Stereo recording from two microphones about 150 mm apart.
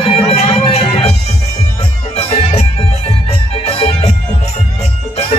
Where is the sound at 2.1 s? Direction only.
45° left (ahead or behind).